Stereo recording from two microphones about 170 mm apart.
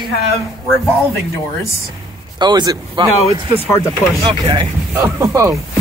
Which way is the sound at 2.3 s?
25° right (ahead or behind).